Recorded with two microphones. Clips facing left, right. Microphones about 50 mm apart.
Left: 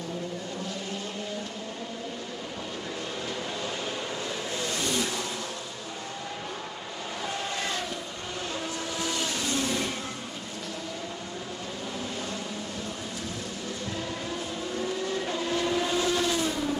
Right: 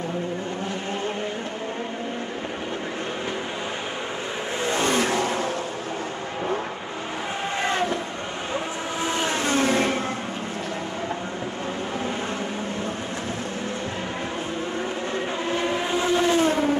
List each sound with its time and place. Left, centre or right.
4.6 s vehicle: right
4.8 s vehicle: right
7.5 s train: right
9.0 s vehicle: right
14.8 s vehicle: right